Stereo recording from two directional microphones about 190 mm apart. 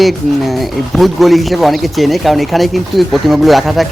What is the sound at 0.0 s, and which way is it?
Speech, centre (ahead or behind).